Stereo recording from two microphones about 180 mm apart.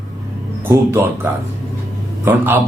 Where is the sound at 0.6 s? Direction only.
10° right (ahead or behind).